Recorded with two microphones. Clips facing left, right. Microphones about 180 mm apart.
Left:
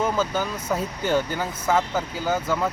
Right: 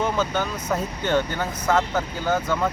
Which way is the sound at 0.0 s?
5° left (ahead or behind).